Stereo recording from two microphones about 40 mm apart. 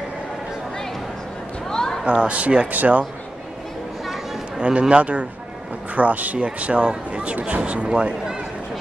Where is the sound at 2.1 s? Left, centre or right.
Right.